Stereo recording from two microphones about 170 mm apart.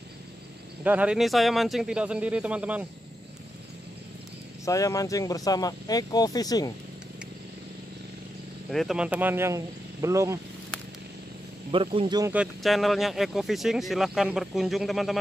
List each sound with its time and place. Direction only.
0.8 s speech: 10° right (ahead or behind)
4.6 s speech: 20° left (ahead or behind)
8.6 s speech: centre (ahead or behind); by 10.4 s 15° right (ahead or behind)
11.7 s speech: 35° right (ahead or behind)
12.3 s speech: 5° right (ahead or behind)